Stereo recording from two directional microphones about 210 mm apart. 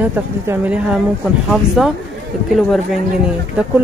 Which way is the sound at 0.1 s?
10° right (ahead or behind).